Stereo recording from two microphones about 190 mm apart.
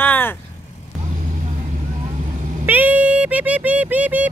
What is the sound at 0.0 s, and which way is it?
Vehicle, 10° left (ahead or behind).